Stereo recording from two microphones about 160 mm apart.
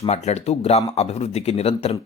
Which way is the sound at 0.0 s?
40° left (ahead or behind).